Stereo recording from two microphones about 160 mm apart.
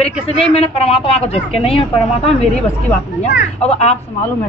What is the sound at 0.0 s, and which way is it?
Speech, 40° left (ahead or behind).